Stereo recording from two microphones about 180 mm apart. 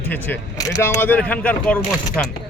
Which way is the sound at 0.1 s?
15° left (ahead or behind).